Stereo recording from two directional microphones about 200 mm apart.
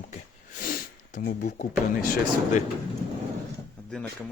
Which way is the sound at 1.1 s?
40° left (ahead or behind).